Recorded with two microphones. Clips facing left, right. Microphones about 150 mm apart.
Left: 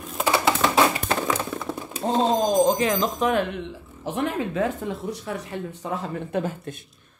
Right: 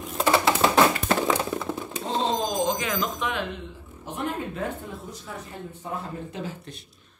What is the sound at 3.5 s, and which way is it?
Speech, 90° left.